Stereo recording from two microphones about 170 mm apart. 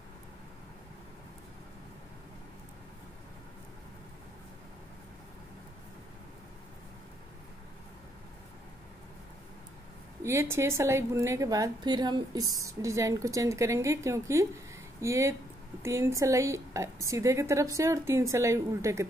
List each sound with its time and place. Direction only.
10.2 s a woman's voice: 15° right (ahead or behind)